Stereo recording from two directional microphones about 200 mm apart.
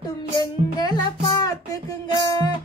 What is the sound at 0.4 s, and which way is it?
Music, 20° left (ahead or behind).